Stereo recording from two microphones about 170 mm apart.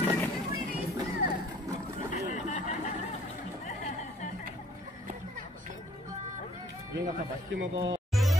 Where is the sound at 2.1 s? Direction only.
45° left (ahead or behind).